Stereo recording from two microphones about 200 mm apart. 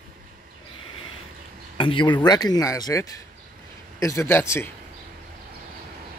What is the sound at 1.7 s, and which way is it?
Speech, 25° left (ahead or behind).